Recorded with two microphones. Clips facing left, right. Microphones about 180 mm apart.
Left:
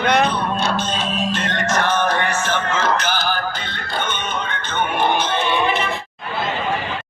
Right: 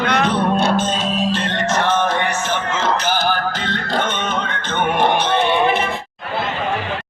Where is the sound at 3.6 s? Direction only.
90° right; by 5.8 s 65° right (ahead or behind).